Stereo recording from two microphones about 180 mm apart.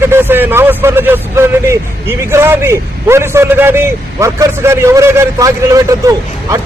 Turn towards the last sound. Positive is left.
turn(degrees=-20)  # may be behind; listen again after turning